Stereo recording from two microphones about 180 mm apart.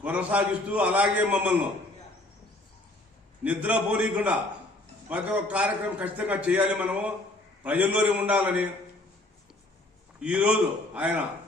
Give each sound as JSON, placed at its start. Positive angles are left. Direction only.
{"t": 0.0, "sound": "a man's voice", "side_deg": -10}
{"t": 3.4, "sound": "a man's voice", "side_deg": -5}
{"t": 10.2, "sound": "a man's voice", "side_deg": -5}